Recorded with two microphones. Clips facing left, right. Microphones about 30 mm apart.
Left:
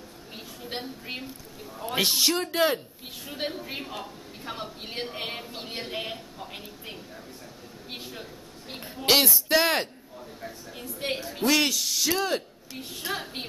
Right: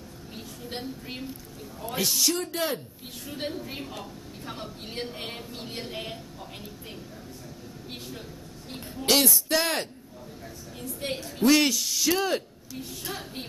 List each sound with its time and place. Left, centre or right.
0.7 s speech: centre
2.0 s speech: left
2.5 s a woman's voice: centre
8.6 s speech: centre
11.4 s a woman's voice: centre
12.7 s speech: left